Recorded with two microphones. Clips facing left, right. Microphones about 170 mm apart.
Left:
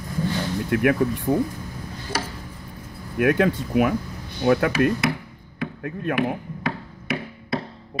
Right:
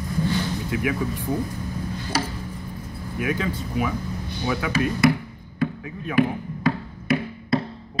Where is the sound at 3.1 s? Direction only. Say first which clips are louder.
Left 7 dB; 70° left (ahead or behind).